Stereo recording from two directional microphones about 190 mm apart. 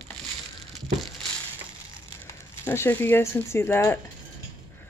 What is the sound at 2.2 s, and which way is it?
Speech, 15° left (ahead or behind).